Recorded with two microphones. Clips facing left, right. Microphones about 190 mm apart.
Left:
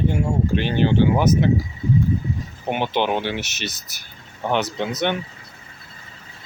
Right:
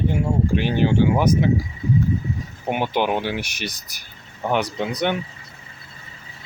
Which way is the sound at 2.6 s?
5° right (ahead or behind).